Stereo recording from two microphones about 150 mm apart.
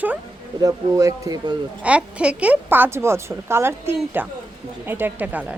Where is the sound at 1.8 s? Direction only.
10° right (ahead or behind).